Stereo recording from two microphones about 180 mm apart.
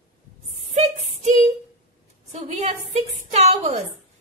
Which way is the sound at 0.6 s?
35° right (ahead or behind).